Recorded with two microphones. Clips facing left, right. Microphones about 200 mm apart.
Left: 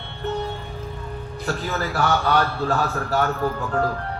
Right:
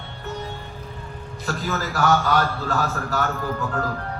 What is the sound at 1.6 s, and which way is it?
Speech, 40° left (ahead or behind).